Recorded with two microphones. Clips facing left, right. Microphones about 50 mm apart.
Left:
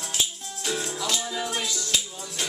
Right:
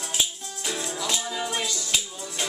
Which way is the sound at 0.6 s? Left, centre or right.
Centre.